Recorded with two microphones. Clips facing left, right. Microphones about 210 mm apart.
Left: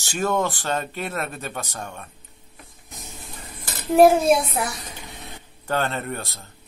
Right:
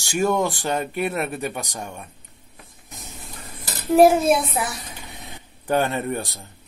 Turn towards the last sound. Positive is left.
turn(degrees=-15)  # may be behind; listen again after turning